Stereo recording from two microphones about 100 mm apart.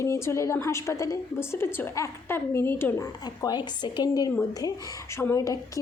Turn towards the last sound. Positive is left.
turn(degrees=35)  # may be behind; listen again after turning